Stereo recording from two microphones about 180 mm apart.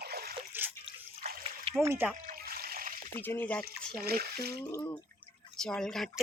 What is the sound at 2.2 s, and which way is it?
Water, 55° right (ahead or behind).